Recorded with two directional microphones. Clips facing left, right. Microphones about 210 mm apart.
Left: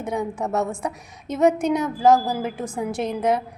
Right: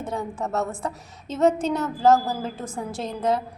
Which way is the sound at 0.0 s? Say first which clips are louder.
Left 3 dB; 15° left (ahead or behind).